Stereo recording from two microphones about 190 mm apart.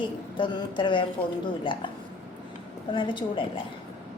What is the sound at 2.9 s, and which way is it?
Speech, 25° left (ahead or behind).